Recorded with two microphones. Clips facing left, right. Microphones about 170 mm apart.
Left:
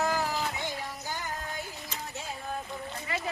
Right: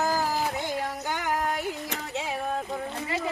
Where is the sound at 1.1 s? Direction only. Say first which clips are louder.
Right 10 dB; 85° right.